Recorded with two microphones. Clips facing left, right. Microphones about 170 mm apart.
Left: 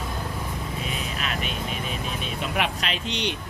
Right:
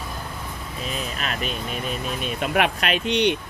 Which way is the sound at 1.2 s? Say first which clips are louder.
Right 2 dB; 40° right (ahead or behind).